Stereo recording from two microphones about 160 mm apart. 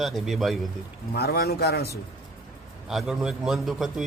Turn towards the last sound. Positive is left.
turn(degrees=0)  # may be behind; listen again after turning